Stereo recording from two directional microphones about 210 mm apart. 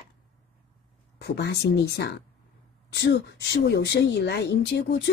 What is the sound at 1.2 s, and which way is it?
Speech, 55° left (ahead or behind).